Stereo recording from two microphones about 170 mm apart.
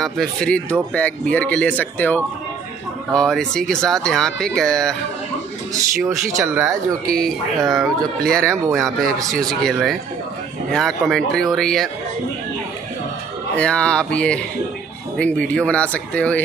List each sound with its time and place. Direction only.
0.0 s speech: 5° left (ahead or behind)
5.7 s speech: 20° right (ahead or behind)
7.2 s speech: centre (ahead or behind)
13.6 s speech: 5° left (ahead or behind)